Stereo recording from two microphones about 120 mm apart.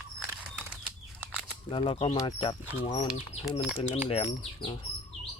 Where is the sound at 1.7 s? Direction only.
50° left (ahead or behind).